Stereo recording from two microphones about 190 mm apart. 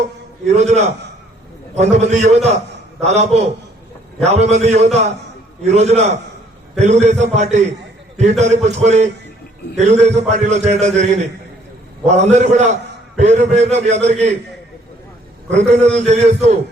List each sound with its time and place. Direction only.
0.4 s a man's voice: 35° right (ahead or behind)
15.5 s a man's voice: 35° right (ahead or behind)